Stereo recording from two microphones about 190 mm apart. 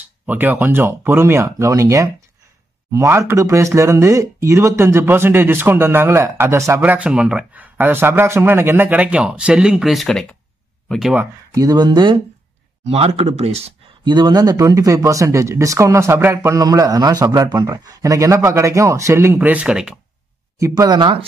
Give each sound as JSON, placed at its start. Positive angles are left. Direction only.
{"t": 0.3, "sound": "speech", "side_deg": -10}
{"t": 11.5, "sound": "speech", "side_deg": -20}
{"t": 20.5, "sound": "speech", "side_deg": -20}